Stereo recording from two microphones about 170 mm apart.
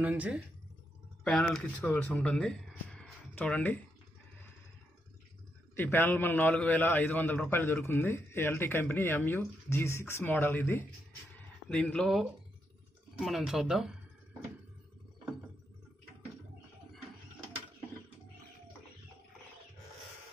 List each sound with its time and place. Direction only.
0.0 s speech: 10° right (ahead or behind)
1.2 s speech: 5° left (ahead or behind)
5.8 s a man's voice: 15° left (ahead or behind)